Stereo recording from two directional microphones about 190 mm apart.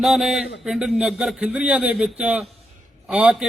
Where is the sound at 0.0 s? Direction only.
Centre (ahead or behind).